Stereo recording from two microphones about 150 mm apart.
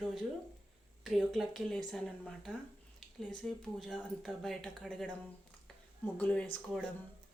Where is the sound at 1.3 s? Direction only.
Centre (ahead or behind).